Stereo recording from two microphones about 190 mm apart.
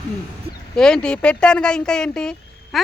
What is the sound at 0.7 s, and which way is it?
Speech, 5° left (ahead or behind).